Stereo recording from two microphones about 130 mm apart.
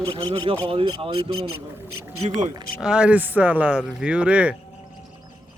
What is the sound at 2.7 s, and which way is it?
Speech, 5° right (ahead or behind).